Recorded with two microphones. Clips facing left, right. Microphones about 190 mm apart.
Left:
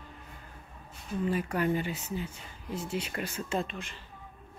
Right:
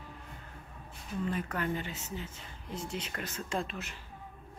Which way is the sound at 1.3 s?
10° left (ahead or behind).